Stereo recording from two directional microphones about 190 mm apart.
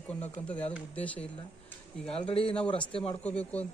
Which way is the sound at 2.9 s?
30° left (ahead or behind).